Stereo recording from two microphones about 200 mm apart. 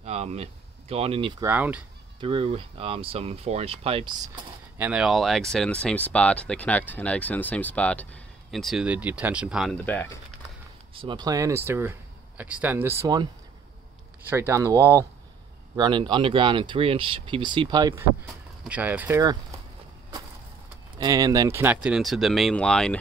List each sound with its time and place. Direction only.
0.0 s speech: 30° right (ahead or behind)
1.4 s speech: 10° right (ahead or behind)
2.1 s speech: 25° right (ahead or behind)
4.7 s speech: 5° right (ahead or behind)
11.0 s speech: 20° right (ahead or behind)
14.3 s speech: 10° right (ahead or behind)
18.6 s speech: 5° right (ahead or behind)
21.0 s speech: 20° right (ahead or behind); by 22.9 s 5° left (ahead or behind)